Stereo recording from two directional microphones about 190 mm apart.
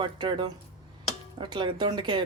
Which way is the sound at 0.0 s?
25° right (ahead or behind).